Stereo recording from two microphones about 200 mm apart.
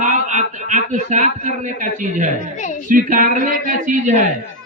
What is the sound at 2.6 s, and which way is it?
Speech, 40° left (ahead or behind).